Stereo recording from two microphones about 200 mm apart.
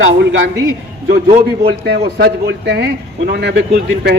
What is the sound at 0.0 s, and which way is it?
Speech, 70° right (ahead or behind).